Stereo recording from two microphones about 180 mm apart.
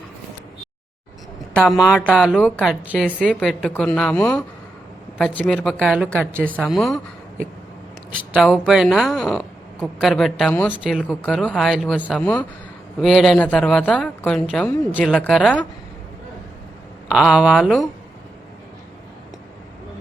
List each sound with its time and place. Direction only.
1.8 s speech: centre (ahead or behind)
8.4 s speech: centre (ahead or behind)
17.1 s speech: 5° right (ahead or behind)